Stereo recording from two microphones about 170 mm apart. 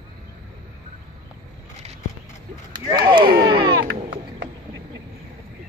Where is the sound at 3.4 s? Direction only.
25° right (ahead or behind).